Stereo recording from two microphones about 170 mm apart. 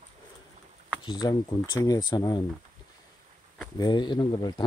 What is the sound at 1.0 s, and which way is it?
Speech, 25° left (ahead or behind).